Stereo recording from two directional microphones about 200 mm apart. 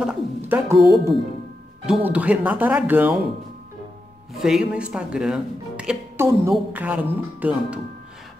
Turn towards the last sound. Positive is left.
turn(degrees=-10)  # may be behind; listen again after turning